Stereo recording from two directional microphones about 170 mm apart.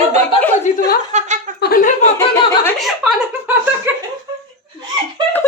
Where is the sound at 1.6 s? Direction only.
60° left (ahead or behind).